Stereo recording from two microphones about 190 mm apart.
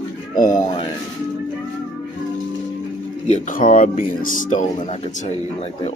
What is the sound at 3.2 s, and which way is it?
Speech, 40° left (ahead or behind).